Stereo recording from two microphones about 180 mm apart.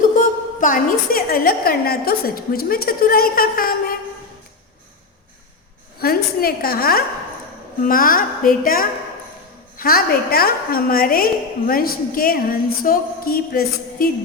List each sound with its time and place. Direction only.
0.6 s a woman's voice: 50° left (ahead or behind)
6.0 s a woman's voice: 55° left (ahead or behind)